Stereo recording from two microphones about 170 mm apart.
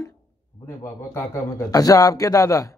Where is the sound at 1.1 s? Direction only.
20° left (ahead or behind).